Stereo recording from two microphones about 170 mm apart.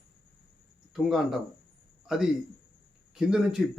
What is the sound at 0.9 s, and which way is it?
Speech, centre (ahead or behind).